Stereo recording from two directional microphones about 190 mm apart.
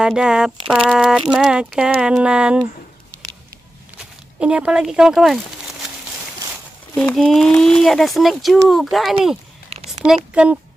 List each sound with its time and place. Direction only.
0.0 s speech: 5° right (ahead or behind)
4.0 s speech: 5° right (ahead or behind)
7.0 s speech: 5° left (ahead or behind)
9.7 s a sound: 35° right (ahead or behind)
10.0 s speech: 5° right (ahead or behind)